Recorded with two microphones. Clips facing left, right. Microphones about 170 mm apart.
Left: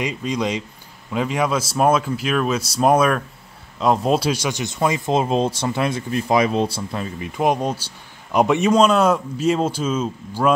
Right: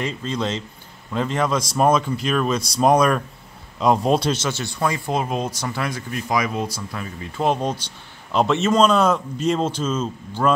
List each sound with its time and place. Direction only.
0.0 s a man's voice: 15° left (ahead or behind)
7.2 s a man's voice: 15° left (ahead or behind)